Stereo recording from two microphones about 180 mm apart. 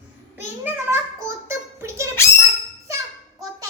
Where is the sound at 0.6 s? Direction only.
10° right (ahead or behind).